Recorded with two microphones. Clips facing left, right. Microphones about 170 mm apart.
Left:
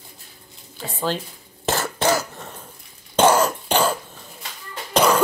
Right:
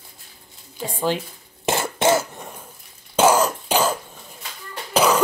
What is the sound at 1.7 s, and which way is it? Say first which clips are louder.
Cough: right 2 dB; 20° right (ahead or behind).